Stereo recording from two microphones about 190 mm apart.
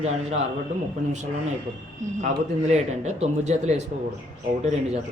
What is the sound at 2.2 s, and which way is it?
Speech, 35° right (ahead or behind).